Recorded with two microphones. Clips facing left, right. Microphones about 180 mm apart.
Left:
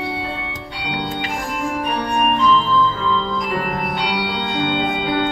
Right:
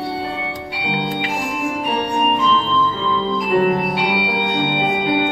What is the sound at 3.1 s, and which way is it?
Music, 15° right (ahead or behind).